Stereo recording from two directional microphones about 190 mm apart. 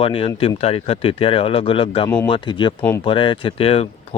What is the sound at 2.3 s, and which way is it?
Speech, 25° left (ahead or behind).